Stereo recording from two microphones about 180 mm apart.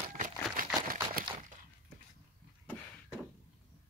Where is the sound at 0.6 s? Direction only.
50° right (ahead or behind).